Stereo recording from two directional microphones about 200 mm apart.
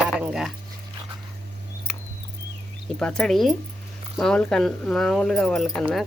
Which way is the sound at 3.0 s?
5° left (ahead or behind).